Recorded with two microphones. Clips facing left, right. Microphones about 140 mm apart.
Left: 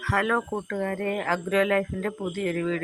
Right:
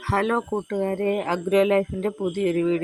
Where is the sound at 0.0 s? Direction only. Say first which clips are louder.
Right 3 dB; 25° right (ahead or behind).